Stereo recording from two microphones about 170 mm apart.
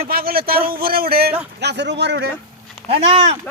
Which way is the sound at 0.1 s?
60° right (ahead or behind).